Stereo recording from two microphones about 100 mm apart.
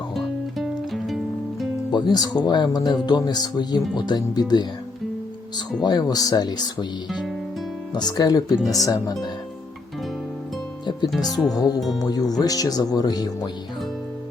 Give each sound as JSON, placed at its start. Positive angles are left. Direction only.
{"t": 0.1, "sound": "music", "side_deg": 0}
{"t": 1.9, "sound": "speech", "side_deg": 45}
{"t": 5.8, "sound": "speech", "side_deg": 45}
{"t": 7.9, "sound": "speech", "side_deg": 40}
{"t": 11.3, "sound": "speech", "side_deg": 0}
{"t": 11.5, "sound": "speech", "side_deg": 40}
{"t": 11.8, "sound": "speech", "side_deg": 0}
{"t": 12.0, "sound": "speech", "side_deg": 40}